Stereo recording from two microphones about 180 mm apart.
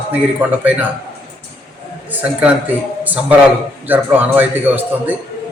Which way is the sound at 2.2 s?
5° right (ahead or behind).